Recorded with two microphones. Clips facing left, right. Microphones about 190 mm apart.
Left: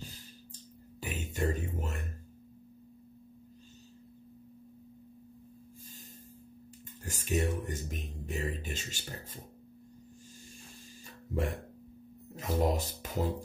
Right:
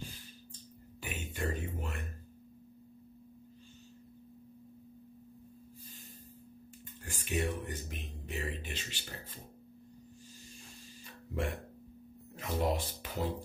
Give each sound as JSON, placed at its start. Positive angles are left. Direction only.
{"t": 1.0, "sound": "music", "side_deg": 40}
{"t": 7.1, "sound": "speech", "side_deg": 40}
{"t": 11.3, "sound": "speech", "side_deg": 40}